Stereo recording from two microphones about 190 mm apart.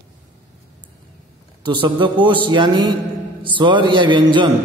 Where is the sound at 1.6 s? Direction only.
25° right (ahead or behind).